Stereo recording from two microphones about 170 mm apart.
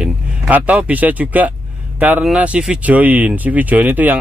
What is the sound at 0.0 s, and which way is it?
Speech, 10° right (ahead or behind).